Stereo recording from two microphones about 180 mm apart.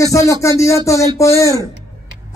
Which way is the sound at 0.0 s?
15° left (ahead or behind).